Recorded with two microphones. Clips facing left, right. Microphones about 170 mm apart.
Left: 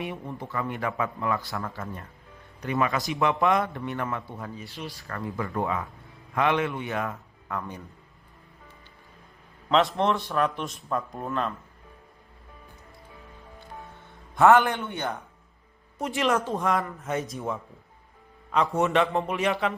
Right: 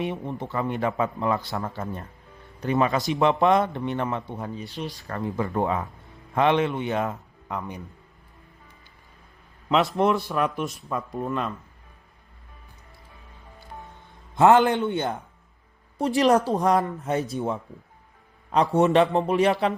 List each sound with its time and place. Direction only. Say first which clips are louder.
0.0 s a man's voice: right 5 dB; 20° right (ahead or behind)
1.8 s a man's voice: right 4 dB; 35° right (ahead or behind)
9.6 s a man's voice: right 2 dB; 5° right (ahead or behind)
14.3 s a man's voice: right 2 dB; 20° right (ahead or behind)
16.0 s a man's voice: right 6 dB; 35° right (ahead or behind)